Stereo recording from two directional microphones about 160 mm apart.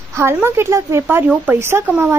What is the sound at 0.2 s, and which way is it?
Speech, 15° right (ahead or behind).